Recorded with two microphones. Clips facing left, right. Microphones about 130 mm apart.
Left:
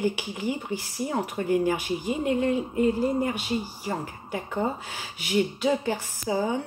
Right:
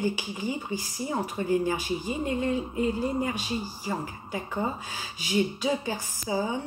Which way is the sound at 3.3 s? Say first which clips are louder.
Left 3 dB; 65° left (ahead or behind).